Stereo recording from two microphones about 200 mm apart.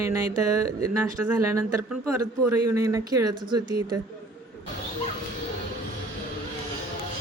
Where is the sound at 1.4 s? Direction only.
15° right (ahead or behind).